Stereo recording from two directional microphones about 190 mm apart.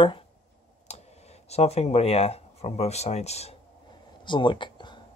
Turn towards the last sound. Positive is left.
turn(degrees=25)  # may be behind; listen again after turning